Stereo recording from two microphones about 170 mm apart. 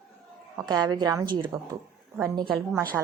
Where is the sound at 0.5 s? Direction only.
25° right (ahead or behind).